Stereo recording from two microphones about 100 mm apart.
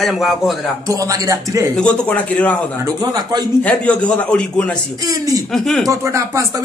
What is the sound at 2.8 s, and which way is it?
Speech, 40° right (ahead or behind).